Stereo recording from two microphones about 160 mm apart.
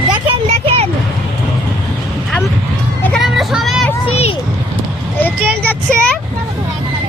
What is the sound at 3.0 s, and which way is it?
Vehicle, centre (ahead or behind).